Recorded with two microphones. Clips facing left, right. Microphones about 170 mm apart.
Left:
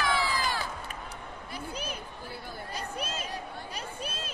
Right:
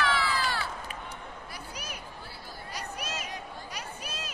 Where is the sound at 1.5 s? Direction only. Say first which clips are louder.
Left 8 dB; 25° left (ahead or behind).